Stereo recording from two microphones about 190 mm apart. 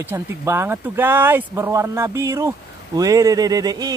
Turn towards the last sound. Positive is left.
turn(degrees=-20)  # may be behind; listen again after turning